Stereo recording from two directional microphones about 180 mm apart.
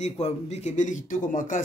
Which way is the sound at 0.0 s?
40° left (ahead or behind).